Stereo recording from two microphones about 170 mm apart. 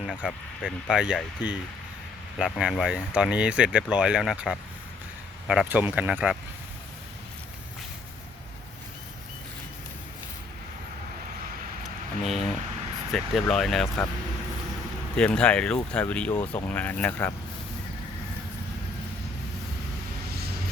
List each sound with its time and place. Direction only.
0.0 s speech: 5° left (ahead or behind)
12.2 s a sound: centre (ahead or behind)
13.1 s speech: centre (ahead or behind)
13.8 s speech: 15° left (ahead or behind)
15.1 s speech: 5° left (ahead or behind)